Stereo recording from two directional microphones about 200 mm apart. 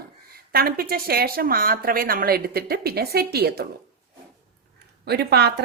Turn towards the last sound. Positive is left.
turn(degrees=-50)  # may be behind; listen again after turning